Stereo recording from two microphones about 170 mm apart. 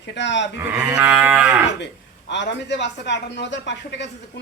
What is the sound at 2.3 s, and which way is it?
Speech, 90° left.